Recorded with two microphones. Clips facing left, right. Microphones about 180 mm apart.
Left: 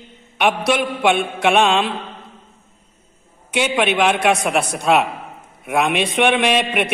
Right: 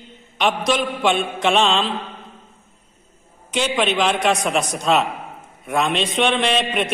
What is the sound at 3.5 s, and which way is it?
A man's voice, 10° left (ahead or behind).